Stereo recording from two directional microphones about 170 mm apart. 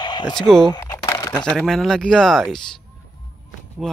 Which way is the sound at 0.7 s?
20° left (ahead or behind).